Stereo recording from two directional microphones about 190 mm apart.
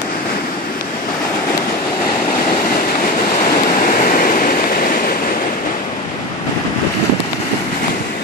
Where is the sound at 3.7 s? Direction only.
45° left (ahead or behind).